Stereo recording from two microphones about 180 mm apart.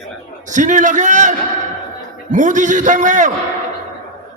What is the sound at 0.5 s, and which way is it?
A man's voice, 45° right (ahead or behind).